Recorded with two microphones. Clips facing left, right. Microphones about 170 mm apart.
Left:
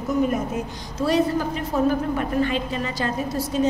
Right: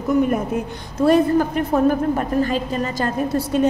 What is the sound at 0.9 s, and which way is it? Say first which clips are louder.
A woman's voice: right 6 dB; 55° right (ahead or behind).